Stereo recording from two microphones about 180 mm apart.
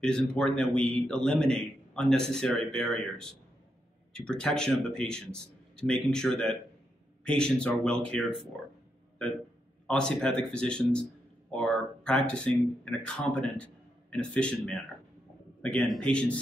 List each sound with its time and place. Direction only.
0.0 s a man's voice: 5° left (ahead or behind)
9.8 s a man's voice: 5° left (ahead or behind)